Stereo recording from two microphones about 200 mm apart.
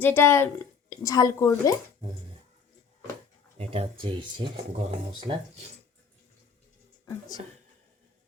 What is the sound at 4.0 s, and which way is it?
Speech, 25° right (ahead or behind).